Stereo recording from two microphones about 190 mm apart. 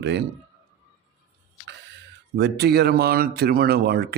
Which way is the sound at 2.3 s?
60° right (ahead or behind).